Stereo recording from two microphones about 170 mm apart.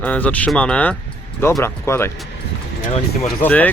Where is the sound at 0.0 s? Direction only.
10° left (ahead or behind).